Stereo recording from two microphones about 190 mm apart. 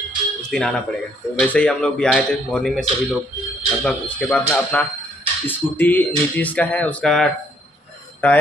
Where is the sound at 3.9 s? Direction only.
5° left (ahead or behind).